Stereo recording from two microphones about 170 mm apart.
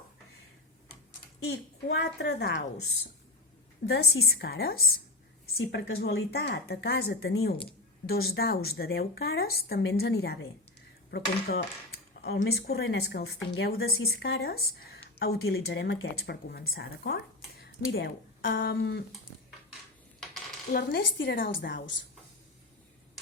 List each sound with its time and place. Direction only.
1.5 s a woman's voice: 80° left
3.8 s a woman's voice: 70° left (ahead or behind)
17.6 s speech: 60° left (ahead or behind)
20.7 s a woman's voice: 85° left; by 21.8 s 70° left (ahead or behind)